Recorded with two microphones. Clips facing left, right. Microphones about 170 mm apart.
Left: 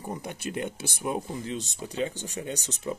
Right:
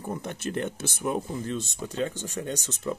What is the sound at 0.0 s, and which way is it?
Speech, 10° left (ahead or behind).